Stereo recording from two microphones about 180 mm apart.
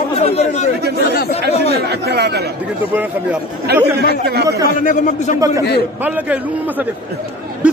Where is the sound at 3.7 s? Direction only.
65° right (ahead or behind).